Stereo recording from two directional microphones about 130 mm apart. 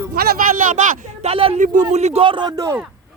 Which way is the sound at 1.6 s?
70° right (ahead or behind).